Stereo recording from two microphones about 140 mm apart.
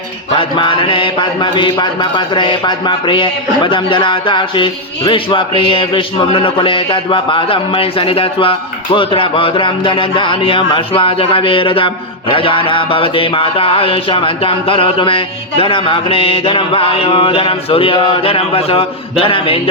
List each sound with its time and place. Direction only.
0.3 s speech: 35° left (ahead or behind)